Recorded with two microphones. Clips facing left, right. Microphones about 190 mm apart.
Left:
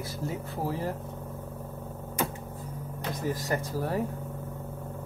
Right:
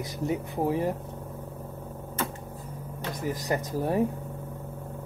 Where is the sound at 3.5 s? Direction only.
20° right (ahead or behind).